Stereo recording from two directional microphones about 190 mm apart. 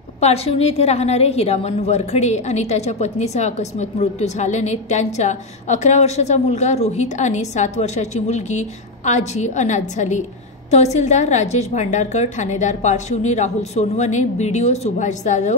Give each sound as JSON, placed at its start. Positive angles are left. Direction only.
{"t": 0.2, "sound": "a woman's voice", "side_deg": 30}